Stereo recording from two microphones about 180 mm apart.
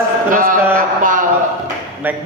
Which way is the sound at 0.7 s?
50° right (ahead or behind).